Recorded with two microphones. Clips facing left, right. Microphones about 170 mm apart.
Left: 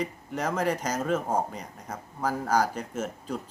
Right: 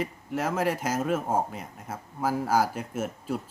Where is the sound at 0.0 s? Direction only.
5° right (ahead or behind).